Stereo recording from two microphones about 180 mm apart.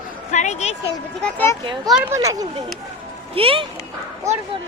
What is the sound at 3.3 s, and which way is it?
Speech, 30° right (ahead or behind).